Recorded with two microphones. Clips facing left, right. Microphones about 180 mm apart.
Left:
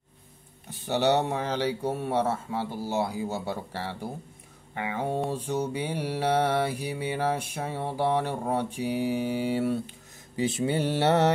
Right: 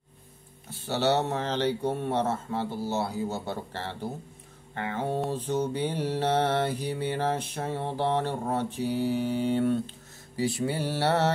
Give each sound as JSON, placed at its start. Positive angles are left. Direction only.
{"t": 0.7, "sound": "mantra", "side_deg": 15}
{"t": 10.3, "sound": "mantra", "side_deg": 20}